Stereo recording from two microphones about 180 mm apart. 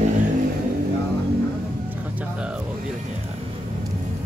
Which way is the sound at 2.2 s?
5° right (ahead or behind).